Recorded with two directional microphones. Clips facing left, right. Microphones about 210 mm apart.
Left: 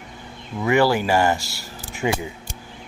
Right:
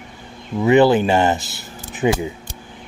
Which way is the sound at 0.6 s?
20° right (ahead or behind).